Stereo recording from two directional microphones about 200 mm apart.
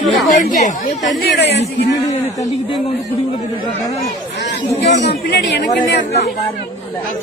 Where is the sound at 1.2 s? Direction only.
55° left (ahead or behind).